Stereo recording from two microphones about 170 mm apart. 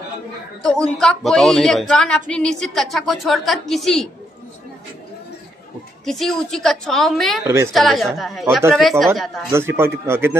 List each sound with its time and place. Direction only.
0.6 s a woman's voice: 5° left (ahead or behind)
6.0 s a woman's voice: centre (ahead or behind)
7.4 s speech: 15° right (ahead or behind)
7.7 s a woman's voice: centre (ahead or behind)
9.5 s speech: 15° right (ahead or behind)